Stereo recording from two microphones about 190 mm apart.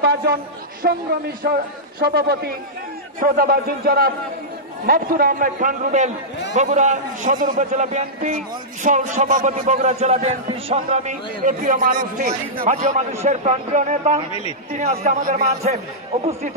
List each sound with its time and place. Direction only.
0.0 s a man's voice: 55° right (ahead or behind); by 15.7 s 40° right (ahead or behind)